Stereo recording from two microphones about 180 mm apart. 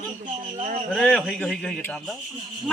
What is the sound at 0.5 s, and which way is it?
Speech, 45° right (ahead or behind).